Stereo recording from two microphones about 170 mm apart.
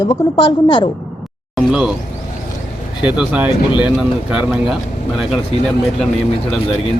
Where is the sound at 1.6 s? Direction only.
5° right (ahead or behind).